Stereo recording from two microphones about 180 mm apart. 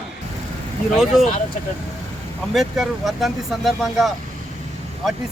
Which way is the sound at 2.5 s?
Centre (ahead or behind).